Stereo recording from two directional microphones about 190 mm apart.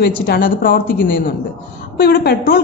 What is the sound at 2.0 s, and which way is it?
Speech, 55° left (ahead or behind).